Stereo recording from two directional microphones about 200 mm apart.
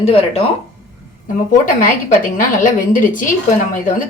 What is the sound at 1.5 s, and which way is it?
A woman's voice, 40° left (ahead or behind).